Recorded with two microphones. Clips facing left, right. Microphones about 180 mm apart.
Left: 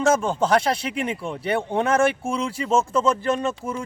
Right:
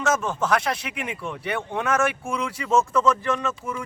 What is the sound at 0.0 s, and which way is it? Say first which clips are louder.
Speech: left 4 dB; 30° left (ahead or behind).